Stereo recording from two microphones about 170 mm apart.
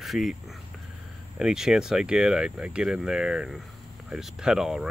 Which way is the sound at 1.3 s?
5° right (ahead or behind).